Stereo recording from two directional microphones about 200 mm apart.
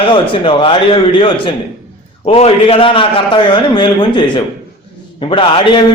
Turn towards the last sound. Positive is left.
turn(degrees=25)  # may be behind; listen again after turning